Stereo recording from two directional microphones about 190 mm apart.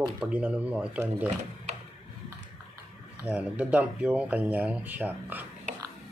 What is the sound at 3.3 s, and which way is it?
Speech, 5° right (ahead or behind).